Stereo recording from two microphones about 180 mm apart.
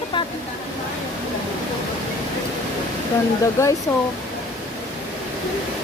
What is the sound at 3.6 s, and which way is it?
Speech, 15° left (ahead or behind).